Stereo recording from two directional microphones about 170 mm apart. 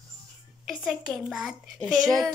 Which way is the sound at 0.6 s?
Centre (ahead or behind).